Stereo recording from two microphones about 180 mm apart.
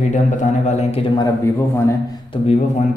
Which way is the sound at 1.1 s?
15° left (ahead or behind).